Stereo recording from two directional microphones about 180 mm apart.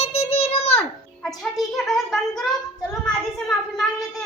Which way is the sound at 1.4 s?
Centre (ahead or behind).